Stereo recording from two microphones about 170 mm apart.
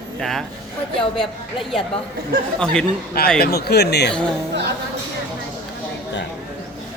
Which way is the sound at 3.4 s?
65° left (ahead or behind).